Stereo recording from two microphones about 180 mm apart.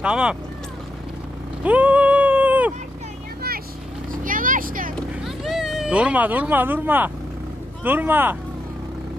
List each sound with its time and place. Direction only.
0.0 s speech: 5° right (ahead or behind)
1.6 s a sound: 10° right (ahead or behind)
4.1 s vehicle: 50° right (ahead or behind)
4.9 s vehicle: centre (ahead or behind)
7.9 s speech: 10° right (ahead or behind)